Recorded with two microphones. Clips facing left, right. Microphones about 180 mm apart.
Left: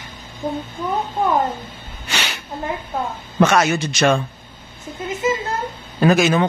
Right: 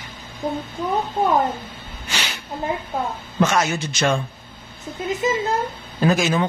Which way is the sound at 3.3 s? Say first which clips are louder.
Left 4 dB; 70° left (ahead or behind).